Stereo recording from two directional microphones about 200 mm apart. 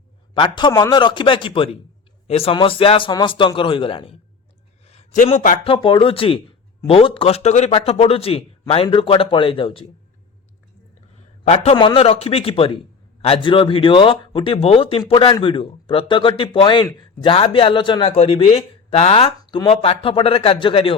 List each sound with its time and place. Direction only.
0.3 s a man's voice: 25° left (ahead or behind); by 5.5 s 40° left (ahead or behind)
5.6 s speech: 25° left (ahead or behind)
11.4 s speech: 35° left (ahead or behind)